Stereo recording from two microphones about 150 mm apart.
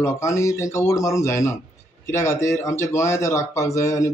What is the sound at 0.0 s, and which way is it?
Speech, 20° left (ahead or behind).